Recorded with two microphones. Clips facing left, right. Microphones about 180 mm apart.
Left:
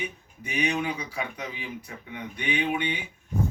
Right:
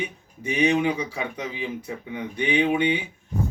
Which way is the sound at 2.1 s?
30° right (ahead or behind).